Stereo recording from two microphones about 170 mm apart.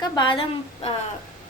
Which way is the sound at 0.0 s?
25° left (ahead or behind).